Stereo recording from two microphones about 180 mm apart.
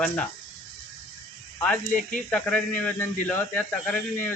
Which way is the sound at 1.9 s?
45° left (ahead or behind).